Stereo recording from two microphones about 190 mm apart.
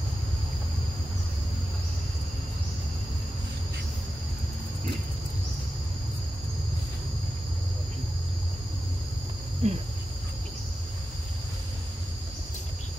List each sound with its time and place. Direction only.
9.6 s speech: 35° right (ahead or behind)